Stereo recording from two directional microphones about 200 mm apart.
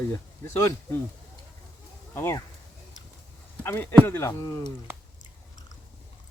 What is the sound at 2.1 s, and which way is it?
Speech, 10° left (ahead or behind).